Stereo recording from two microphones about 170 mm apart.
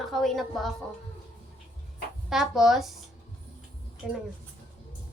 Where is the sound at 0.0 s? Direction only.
Centre (ahead or behind).